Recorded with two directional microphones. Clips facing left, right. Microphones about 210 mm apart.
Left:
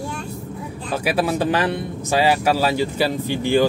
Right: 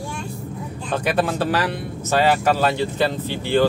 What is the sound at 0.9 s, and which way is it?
Speech, 5° left (ahead or behind).